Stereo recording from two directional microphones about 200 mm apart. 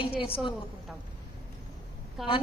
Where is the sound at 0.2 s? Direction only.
25° left (ahead or behind).